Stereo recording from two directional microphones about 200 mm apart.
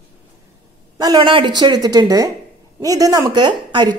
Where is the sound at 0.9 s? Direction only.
20° right (ahead or behind).